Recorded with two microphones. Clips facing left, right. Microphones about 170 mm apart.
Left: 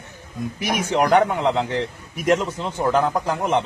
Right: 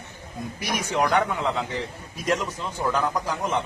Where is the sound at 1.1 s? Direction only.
25° left (ahead or behind).